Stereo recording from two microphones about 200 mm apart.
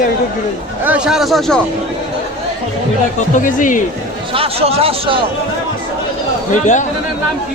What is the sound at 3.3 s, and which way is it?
Speech, 40° left (ahead or behind).